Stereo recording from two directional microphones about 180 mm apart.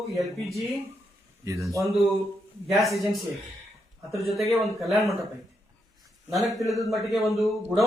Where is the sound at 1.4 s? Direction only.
15° right (ahead or behind).